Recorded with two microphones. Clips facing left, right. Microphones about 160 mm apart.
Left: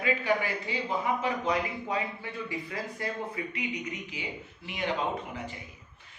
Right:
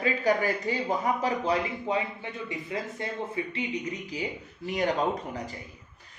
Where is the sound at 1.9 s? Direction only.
25° right (ahead or behind).